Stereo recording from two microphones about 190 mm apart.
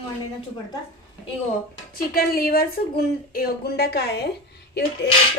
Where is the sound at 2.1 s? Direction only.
50° left (ahead or behind).